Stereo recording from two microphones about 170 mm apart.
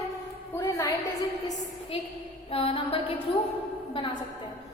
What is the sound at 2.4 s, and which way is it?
Mantra, 35° left (ahead or behind).